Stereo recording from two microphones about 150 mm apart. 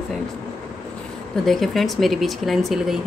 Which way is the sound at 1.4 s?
Centre (ahead or behind).